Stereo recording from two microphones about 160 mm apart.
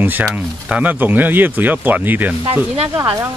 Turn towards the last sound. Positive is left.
turn(degrees=-15)  # may be behind; listen again after turning